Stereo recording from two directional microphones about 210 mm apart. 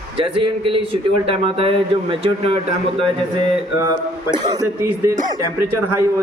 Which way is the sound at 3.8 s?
20° right (ahead or behind).